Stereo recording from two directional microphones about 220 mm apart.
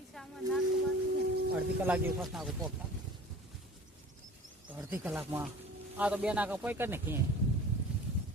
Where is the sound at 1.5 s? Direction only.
5° right (ahead or behind).